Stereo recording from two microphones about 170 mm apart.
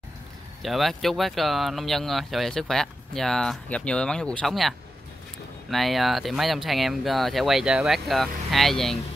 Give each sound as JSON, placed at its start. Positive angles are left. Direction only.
{"t": 0.6, "sound": "speech", "side_deg": 0}